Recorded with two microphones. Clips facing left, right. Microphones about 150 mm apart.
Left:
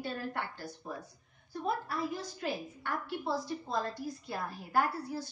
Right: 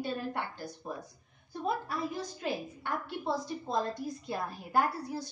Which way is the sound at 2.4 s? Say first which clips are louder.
Right 2 dB; 20° right (ahead or behind).